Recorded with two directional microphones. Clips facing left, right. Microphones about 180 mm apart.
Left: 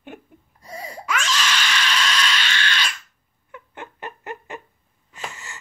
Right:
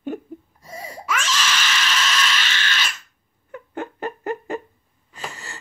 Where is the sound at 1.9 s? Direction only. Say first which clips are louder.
Even; 5° right (ahead or behind).